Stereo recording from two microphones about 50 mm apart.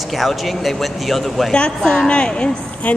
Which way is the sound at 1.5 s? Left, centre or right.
Centre.